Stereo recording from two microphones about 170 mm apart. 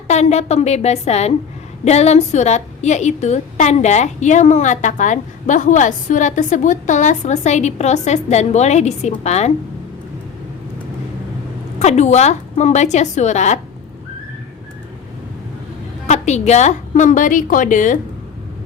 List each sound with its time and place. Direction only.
0.1 s a woman's voice: 40° left (ahead or behind)
11.8 s a woman's voice: 40° left (ahead or behind)
16.0 s a woman's voice: 40° left (ahead or behind)